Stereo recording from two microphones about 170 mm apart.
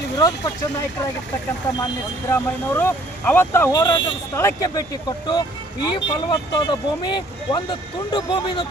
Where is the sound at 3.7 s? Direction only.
25° left (ahead or behind).